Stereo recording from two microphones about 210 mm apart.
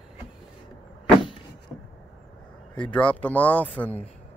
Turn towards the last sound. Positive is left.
turn(degrees=5)  # may be behind; listen again after turning